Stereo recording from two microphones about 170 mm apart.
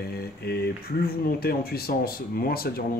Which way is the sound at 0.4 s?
70° left (ahead or behind).